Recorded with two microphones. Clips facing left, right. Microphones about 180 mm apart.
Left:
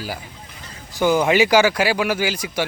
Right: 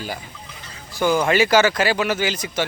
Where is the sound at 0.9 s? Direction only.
15° left (ahead or behind).